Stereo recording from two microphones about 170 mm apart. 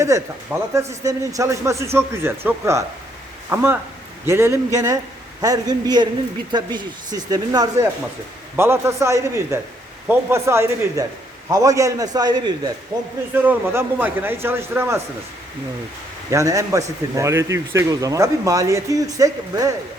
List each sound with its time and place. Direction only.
0.1 s a man's voice: 20° right (ahead or behind)
13.3 s a man's voice: 10° right (ahead or behind)
16.3 s a man's voice: 20° right (ahead or behind)